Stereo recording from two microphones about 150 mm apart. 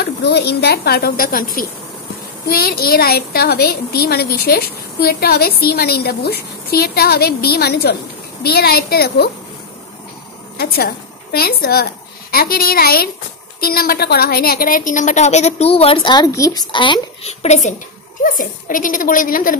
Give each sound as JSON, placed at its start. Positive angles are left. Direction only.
{"t": 0.0, "sound": "a woman's voice", "side_deg": 90}
{"t": 2.4, "sound": "a woman's voice", "side_deg": 90}
{"t": 10.6, "sound": "a woman's voice", "side_deg": 90}
{"t": 17.3, "sound": "a woman's voice", "side_deg": 50}
{"t": 18.2, "sound": "a woman's voice", "side_deg": 60}